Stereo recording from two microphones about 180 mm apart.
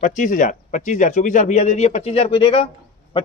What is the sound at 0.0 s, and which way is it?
Speech, 45° left (ahead or behind).